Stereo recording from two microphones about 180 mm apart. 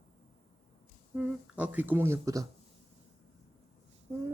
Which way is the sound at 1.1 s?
10° right (ahead or behind).